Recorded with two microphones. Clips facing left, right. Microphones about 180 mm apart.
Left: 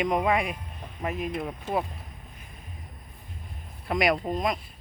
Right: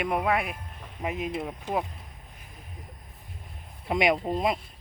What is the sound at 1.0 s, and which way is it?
Speech, 15° right (ahead or behind).